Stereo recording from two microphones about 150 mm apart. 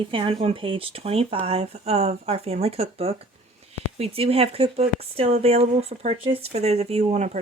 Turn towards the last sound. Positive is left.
turn(degrees=-50)  # may be behind; listen again after turning